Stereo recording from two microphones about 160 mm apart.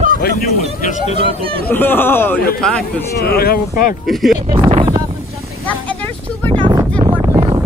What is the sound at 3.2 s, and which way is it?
Speech, 75° left (ahead or behind).